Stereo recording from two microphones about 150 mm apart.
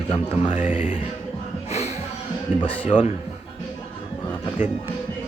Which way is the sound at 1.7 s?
45° left (ahead or behind).